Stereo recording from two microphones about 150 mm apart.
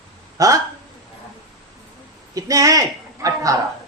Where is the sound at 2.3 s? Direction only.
20° right (ahead or behind).